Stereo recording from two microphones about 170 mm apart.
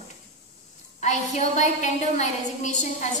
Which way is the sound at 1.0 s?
45° left (ahead or behind).